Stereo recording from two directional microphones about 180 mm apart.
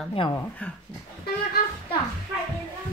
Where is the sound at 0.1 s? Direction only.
30° left (ahead or behind).